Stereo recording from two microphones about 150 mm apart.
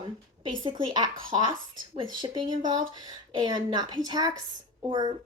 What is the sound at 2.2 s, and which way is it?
Speech, 30° right (ahead or behind).